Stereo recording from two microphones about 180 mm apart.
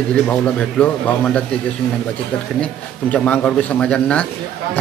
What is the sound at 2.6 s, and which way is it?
A man's voice, 5° left (ahead or behind).